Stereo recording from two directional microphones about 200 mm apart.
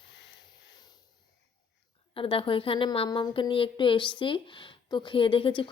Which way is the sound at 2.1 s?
25° left (ahead or behind).